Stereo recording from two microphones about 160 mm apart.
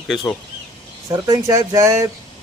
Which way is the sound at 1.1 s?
20° right (ahead or behind).